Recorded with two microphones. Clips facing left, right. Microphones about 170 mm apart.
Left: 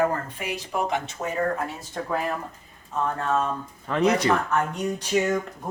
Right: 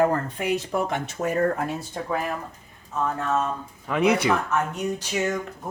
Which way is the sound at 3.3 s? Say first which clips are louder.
Even; 5° right (ahead or behind).